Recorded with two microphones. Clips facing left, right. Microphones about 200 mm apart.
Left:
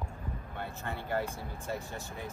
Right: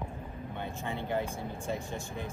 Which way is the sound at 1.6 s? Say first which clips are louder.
Right 2 dB; 15° right (ahead or behind).